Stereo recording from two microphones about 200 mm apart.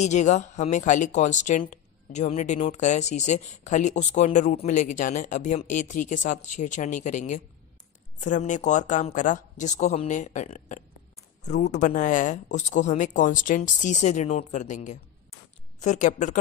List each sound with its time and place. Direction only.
0.0 s speech: 35° left (ahead or behind)